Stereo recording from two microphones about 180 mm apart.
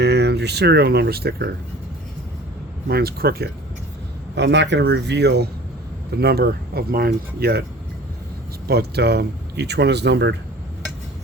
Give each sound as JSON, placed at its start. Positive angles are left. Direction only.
{"t": 0.0, "sound": "speech", "side_deg": -65}
{"t": 2.9, "sound": "speech", "side_deg": -60}
{"t": 4.4, "sound": "speech", "side_deg": -75}
{"t": 8.6, "sound": "speech", "side_deg": -65}